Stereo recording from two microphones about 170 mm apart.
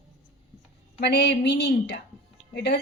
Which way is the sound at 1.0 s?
75° left (ahead or behind).